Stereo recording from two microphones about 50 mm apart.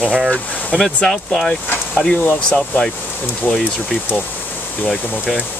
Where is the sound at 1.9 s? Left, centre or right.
Left.